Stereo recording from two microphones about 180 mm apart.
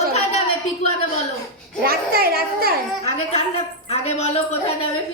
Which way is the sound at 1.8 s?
55° right (ahead or behind).